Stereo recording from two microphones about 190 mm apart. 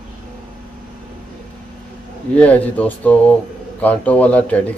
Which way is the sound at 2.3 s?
5° left (ahead or behind).